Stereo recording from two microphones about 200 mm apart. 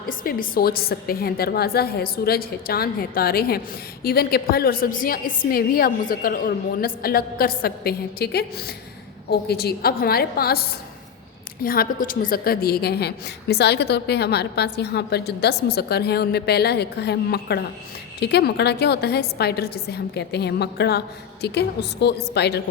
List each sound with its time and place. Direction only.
0.1 s a woman's voice: 45° left (ahead or behind)